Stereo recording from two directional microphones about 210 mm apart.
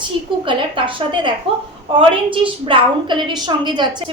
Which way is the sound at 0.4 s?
25° right (ahead or behind).